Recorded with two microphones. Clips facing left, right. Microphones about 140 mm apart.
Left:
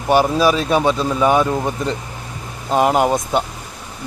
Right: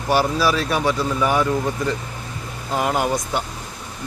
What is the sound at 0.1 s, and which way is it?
Speech, 20° left (ahead or behind).